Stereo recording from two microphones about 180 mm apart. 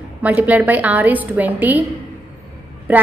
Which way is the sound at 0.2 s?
10° right (ahead or behind).